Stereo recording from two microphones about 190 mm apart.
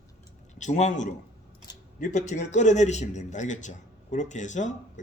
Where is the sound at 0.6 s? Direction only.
40° left (ahead or behind).